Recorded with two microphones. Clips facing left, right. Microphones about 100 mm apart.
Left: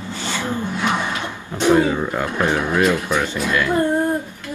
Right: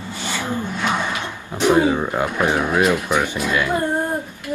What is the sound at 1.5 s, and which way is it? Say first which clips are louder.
Speech: even; 15° right (ahead or behind).